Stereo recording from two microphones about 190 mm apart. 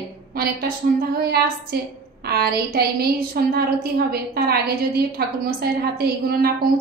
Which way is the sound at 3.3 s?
50° right (ahead or behind).